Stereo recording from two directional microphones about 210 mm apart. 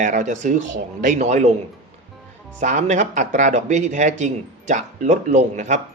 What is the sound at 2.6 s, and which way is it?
Speech, 35° right (ahead or behind).